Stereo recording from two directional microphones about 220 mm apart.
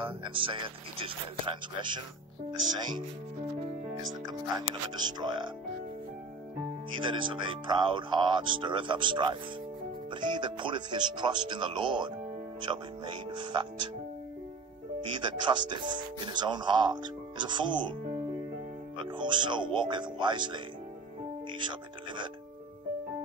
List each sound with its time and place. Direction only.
0.0 s speech: 25° right (ahead or behind)
4.3 s speech: 20° right (ahead or behind)
7.0 s speech: 20° right (ahead or behind)
15.0 s speech: 20° right (ahead or behind)
19.0 s speech: 20° right (ahead or behind)